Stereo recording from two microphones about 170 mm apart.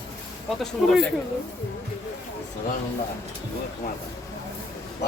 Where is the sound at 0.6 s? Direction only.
Centre (ahead or behind).